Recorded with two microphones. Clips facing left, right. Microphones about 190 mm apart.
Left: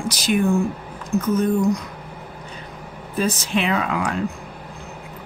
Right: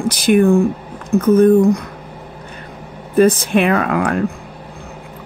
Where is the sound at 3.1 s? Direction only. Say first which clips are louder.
Right 10 dB; 55° right (ahead or behind).